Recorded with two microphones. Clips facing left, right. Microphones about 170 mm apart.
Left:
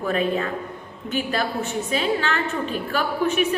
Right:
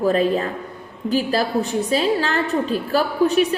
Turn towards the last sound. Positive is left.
turn(degrees=-35)  # may be behind; listen again after turning